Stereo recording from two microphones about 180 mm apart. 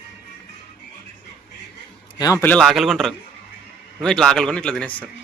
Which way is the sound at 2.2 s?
20° left (ahead or behind).